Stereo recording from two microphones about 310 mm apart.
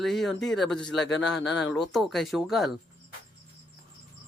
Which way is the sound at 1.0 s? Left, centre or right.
Left.